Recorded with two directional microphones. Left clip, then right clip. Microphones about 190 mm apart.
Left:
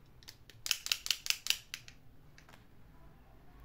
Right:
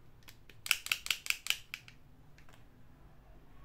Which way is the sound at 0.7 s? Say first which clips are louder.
Right 1 dB; 15° right (ahead or behind).